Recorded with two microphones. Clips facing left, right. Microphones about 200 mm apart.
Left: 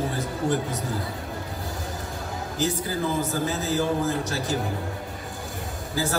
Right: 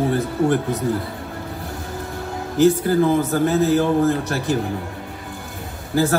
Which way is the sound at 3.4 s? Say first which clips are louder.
Right 10 dB; 60° right (ahead or behind).